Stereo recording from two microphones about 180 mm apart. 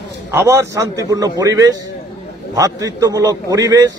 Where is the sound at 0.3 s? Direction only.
15° right (ahead or behind).